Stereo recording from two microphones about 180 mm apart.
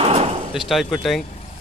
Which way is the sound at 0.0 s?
35° right (ahead or behind).